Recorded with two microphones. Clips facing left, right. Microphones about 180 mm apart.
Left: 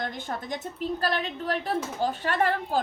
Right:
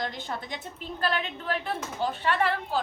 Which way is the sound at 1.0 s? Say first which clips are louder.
Right 2 dB; 40° left (ahead or behind).